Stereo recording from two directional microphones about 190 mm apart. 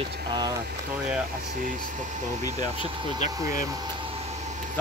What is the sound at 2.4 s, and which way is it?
Speech, 20° left (ahead or behind).